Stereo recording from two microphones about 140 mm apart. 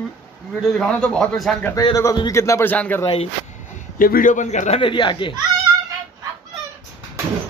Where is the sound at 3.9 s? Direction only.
85° left; by 4.8 s 60° left (ahead or behind).